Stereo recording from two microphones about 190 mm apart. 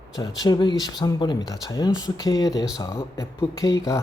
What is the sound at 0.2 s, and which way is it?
Speech, 20° left (ahead or behind).